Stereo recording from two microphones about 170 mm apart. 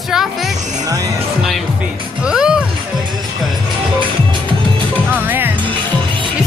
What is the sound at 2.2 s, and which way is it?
Music, 5° right (ahead or behind).